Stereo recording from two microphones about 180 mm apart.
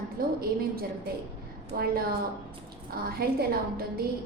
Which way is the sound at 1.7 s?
60° right (ahead or behind).